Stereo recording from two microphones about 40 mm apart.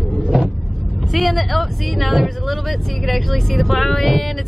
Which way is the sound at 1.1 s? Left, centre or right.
Centre.